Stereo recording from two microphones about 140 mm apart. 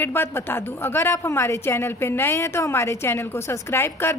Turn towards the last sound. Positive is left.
turn(degrees=15)  # may be behind; listen again after turning